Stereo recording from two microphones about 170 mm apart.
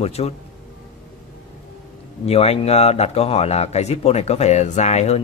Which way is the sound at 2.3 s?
35° left (ahead or behind).